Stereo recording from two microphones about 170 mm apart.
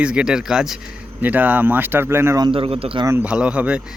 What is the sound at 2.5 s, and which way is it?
Speech, 35° right (ahead or behind).